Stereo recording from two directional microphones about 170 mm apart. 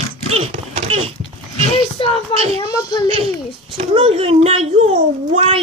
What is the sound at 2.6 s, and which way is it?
Speech, 20° left (ahead or behind).